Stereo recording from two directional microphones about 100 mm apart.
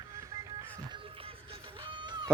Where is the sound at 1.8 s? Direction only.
55° right (ahead or behind).